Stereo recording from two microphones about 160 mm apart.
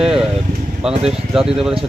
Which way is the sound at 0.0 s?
5° right (ahead or behind).